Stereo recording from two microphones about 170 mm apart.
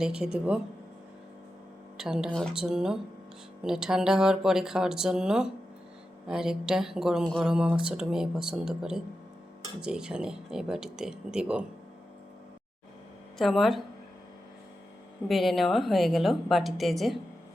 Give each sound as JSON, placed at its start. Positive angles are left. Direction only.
{"t": 0.0, "sound": "a woman's voice", "side_deg": -5}
{"t": 2.0, "sound": "a woman's voice", "side_deg": -5}
{"t": 13.4, "sound": "a woman's voice", "side_deg": 0}
{"t": 15.3, "sound": "a woman's voice", "side_deg": 0}